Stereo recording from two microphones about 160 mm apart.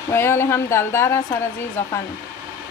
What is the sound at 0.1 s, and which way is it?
A woman's voice, 15° left (ahead or behind).